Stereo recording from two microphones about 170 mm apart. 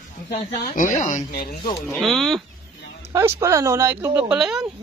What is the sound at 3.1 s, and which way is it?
Speech, 20° right (ahead or behind).